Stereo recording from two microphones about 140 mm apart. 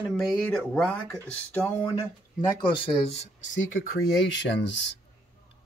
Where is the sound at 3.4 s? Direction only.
65° left (ahead or behind).